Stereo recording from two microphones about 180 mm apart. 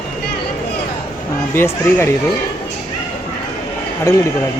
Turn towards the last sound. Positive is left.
turn(degrees=15)  # may be behind; listen again after turning